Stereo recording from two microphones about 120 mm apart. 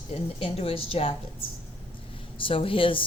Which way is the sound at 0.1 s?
55° left (ahead or behind).